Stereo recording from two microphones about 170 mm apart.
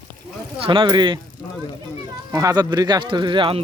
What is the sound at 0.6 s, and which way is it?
Speech, 30° right (ahead or behind).